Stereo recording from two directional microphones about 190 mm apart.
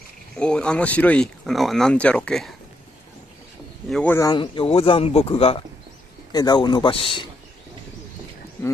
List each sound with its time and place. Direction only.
0.4 s speech: 5° left (ahead or behind)
3.9 s speech: 10° left (ahead or behind); by 7.2 s 30° left (ahead or behind)